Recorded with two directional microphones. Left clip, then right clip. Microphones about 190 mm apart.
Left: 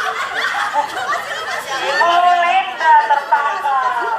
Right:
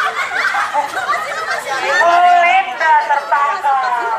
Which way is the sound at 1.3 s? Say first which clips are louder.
Right 3 dB; 5° left (ahead or behind).